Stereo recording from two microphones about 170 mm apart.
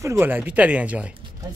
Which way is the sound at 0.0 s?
15° right (ahead or behind).